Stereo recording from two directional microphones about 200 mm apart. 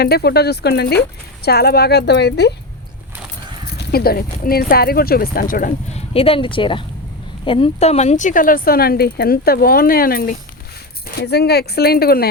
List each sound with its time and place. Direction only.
0.0 s speech: 50° left (ahead or behind)
3.8 s speech: 50° left (ahead or behind)
6.1 s speech: 30° left (ahead or behind); by 12.3 s 50° left (ahead or behind)